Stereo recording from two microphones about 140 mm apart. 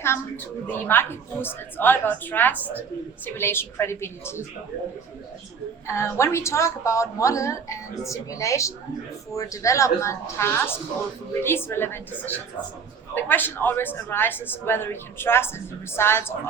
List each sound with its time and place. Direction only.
0.7 s a man's voice: 15° left (ahead or behind)
5.9 s a woman's voice: 20° left (ahead or behind)